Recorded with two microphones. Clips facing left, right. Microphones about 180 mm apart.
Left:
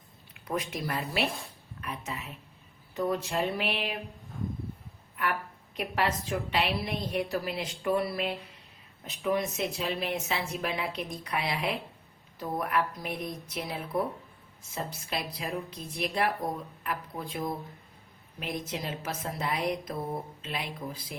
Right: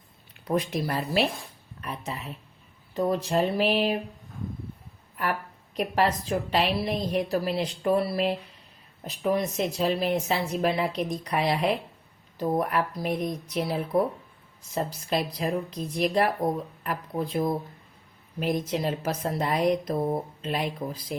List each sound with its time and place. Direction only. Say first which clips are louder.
0.4 s speech: right 6 dB; 35° right (ahead or behind)
5.7 s speech: right 5 dB; 35° right (ahead or behind)